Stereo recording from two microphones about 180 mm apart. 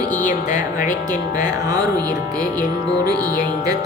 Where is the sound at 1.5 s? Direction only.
20° right (ahead or behind).